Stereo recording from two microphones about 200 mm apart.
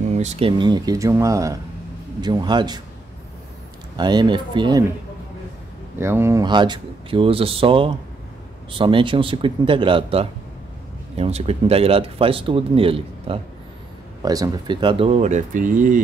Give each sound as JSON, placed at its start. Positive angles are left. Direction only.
{"t": 0.1, "sound": "speech", "side_deg": -30}
{"t": 3.9, "sound": "speech", "side_deg": -20}
{"t": 5.9, "sound": "speech", "side_deg": -10}